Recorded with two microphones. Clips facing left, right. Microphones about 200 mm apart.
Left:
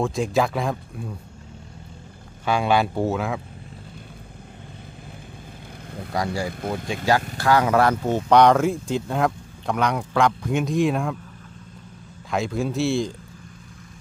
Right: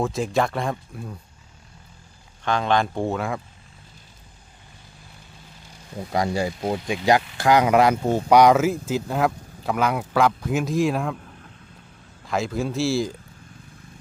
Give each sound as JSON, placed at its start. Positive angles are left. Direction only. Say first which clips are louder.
{"t": 0.0, "sound": "speech", "louder": "left 1 dB", "side_deg": 0}
{"t": 2.4, "sound": "speech", "louder": "left 1 dB", "side_deg": 10}
{"t": 6.1, "sound": "speech", "louder": "right 3 dB", "side_deg": -20}
{"t": 12.3, "sound": "speech", "louder": "even", "side_deg": 0}